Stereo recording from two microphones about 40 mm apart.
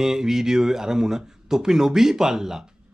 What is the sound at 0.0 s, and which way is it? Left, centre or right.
Speech, centre.